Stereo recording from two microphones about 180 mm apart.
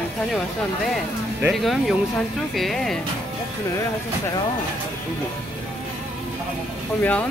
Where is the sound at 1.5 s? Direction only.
Centre (ahead or behind).